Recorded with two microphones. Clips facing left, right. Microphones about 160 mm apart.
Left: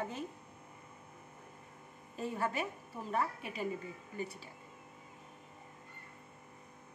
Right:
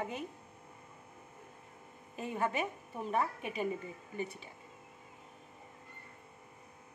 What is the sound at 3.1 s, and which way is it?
Speech, 20° right (ahead or behind).